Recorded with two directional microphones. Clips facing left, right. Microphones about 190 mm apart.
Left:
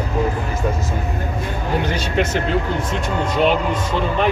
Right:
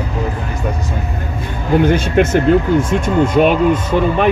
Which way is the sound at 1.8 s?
50° right (ahead or behind).